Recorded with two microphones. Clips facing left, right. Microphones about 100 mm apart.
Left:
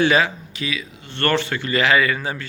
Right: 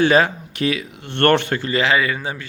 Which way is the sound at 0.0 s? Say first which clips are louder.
Right 2 dB; 40° right (ahead or behind).